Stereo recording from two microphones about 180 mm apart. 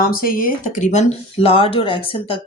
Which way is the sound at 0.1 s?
55° left (ahead or behind).